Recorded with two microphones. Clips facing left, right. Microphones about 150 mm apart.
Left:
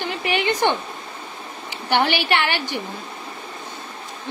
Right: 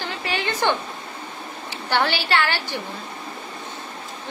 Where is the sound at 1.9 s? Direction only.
15° left (ahead or behind).